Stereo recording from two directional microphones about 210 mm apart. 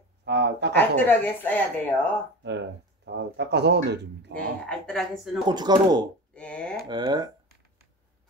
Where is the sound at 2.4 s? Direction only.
55° right (ahead or behind).